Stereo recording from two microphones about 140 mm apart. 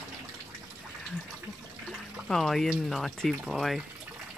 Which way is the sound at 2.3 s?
Centre (ahead or behind).